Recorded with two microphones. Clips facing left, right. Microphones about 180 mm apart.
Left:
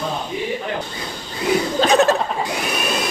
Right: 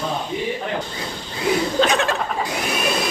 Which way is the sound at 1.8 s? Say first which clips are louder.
Left 7 dB; 40° left (ahead or behind).